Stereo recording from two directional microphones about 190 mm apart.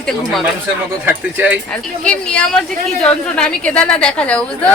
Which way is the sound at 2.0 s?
5° left (ahead or behind).